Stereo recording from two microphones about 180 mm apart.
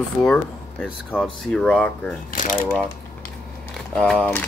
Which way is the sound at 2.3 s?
45° left (ahead or behind).